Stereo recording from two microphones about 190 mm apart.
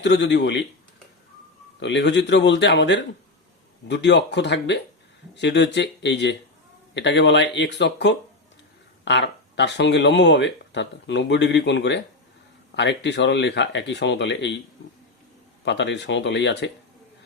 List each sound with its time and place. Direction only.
0.0 s speech: 65° left (ahead or behind)
1.8 s speech: 65° left (ahead or behind)
15.6 s speech: 70° left (ahead or behind)